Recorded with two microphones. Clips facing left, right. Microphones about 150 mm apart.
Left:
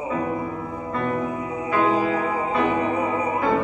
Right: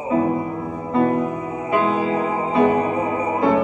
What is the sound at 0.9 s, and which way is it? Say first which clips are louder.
Music: right 7 dB; 25° right (ahead or behind).